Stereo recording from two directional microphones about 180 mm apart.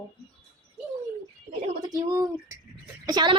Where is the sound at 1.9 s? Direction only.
20° right (ahead or behind).